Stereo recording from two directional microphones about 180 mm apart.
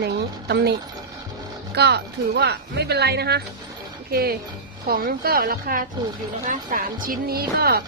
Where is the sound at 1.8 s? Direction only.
65° right (ahead or behind).